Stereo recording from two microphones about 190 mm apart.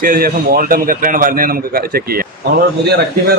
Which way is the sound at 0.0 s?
50° right (ahead or behind).